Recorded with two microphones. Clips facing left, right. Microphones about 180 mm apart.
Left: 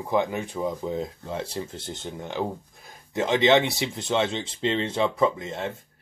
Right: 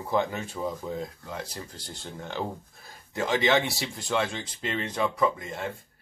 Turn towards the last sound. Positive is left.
turn(degrees=25)  # may be behind; listen again after turning